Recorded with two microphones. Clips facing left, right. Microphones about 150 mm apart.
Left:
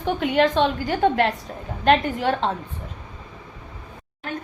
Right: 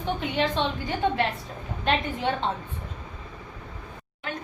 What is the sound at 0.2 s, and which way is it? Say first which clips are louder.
A woman's voice: left 9 dB; 75° left (ahead or behind).